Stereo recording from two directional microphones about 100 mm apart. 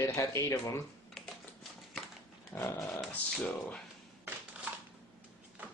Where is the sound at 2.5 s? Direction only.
25° left (ahead or behind).